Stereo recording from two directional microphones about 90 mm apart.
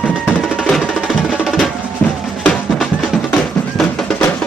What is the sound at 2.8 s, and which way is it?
Music, 10° left (ahead or behind).